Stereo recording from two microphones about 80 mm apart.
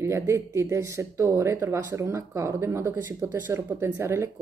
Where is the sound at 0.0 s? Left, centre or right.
Right.